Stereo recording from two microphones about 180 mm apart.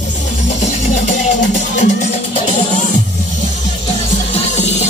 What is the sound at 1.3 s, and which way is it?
Music, 45° left (ahead or behind).